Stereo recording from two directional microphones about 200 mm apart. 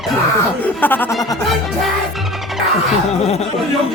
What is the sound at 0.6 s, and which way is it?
Speech, 10° left (ahead or behind).